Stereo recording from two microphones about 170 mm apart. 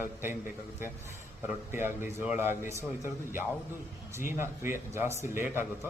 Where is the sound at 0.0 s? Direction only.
10° right (ahead or behind).